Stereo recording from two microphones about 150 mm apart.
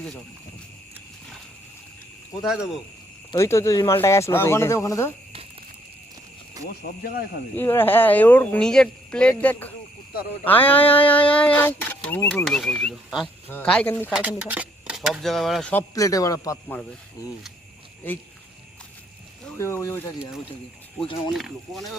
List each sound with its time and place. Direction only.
2.4 s speech: 5° right (ahead or behind)
3.3 s speech: 20° left (ahead or behind)
6.6 s speech: 25° right (ahead or behind)
7.5 s speech: 15° left (ahead or behind); by 13.3 s centre (ahead or behind)
13.5 s speech: 10° left (ahead or behind)
14.1 s speech: 10° right (ahead or behind)
15.7 s speech: 20° left (ahead or behind)
19.5 s speech: 20° left (ahead or behind)
21.3 s speech: centre (ahead or behind)